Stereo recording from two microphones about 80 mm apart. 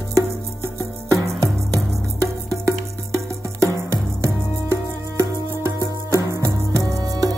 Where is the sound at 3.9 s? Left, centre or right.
Right.